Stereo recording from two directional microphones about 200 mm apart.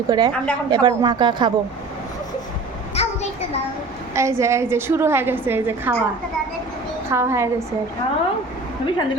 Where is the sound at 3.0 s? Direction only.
30° left (ahead or behind).